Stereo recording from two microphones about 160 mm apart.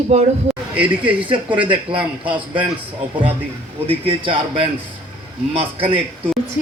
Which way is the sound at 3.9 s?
30° right (ahead or behind).